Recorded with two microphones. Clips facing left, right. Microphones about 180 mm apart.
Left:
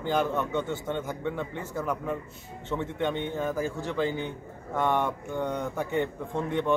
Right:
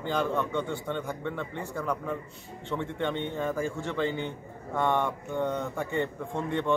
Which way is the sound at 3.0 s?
10° left (ahead or behind).